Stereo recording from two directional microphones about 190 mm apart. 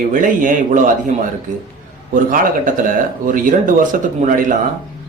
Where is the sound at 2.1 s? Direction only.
45° right (ahead or behind).